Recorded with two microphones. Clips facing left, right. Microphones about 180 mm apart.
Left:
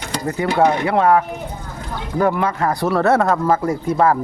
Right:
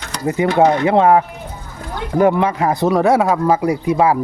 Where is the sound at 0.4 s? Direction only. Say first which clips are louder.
Right 3 dB; 20° right (ahead or behind).